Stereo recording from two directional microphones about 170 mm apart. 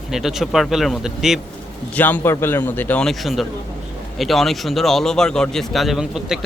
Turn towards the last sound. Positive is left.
turn(degrees=-5)  # may be behind; listen again after turning